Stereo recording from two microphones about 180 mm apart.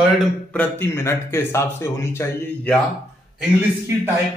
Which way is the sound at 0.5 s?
10° left (ahead or behind).